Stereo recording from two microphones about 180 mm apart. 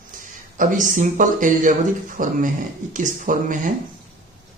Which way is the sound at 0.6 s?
45° right (ahead or behind).